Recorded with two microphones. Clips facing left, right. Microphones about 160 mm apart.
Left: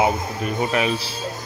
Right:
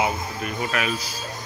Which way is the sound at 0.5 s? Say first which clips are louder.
Left 5 dB; 30° left (ahead or behind).